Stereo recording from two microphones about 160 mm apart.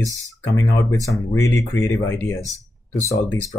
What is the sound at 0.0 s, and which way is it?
Speech, 20° left (ahead or behind).